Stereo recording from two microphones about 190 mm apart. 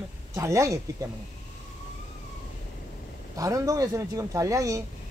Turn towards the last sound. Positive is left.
turn(degrees=-15)  # may be behind; listen again after turning